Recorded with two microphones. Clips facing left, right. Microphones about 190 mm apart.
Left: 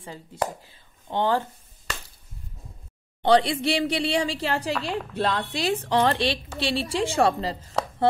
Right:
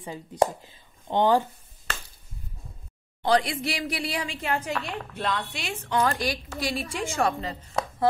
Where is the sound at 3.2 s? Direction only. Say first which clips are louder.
Left 4 dB; 30° left (ahead or behind).